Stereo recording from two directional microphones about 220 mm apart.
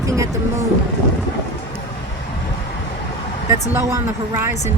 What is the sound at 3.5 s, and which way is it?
Speech, 10° right (ahead or behind).